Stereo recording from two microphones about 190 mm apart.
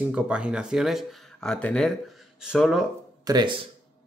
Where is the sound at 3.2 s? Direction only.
20° right (ahead or behind).